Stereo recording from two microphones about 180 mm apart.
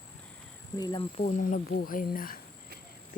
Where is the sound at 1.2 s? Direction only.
45° left (ahead or behind).